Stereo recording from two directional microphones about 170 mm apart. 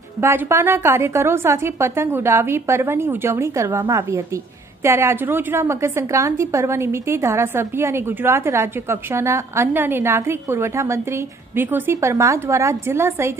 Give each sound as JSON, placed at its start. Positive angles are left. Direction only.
{"t": 0.2, "sound": "a woman's voice", "side_deg": -15}